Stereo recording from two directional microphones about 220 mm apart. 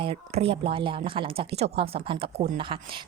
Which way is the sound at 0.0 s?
25° right (ahead or behind).